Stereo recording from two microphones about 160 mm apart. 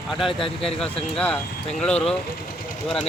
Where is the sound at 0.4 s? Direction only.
35° left (ahead or behind).